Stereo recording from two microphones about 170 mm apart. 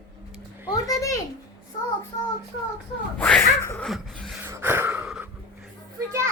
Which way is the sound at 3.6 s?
15° left (ahead or behind).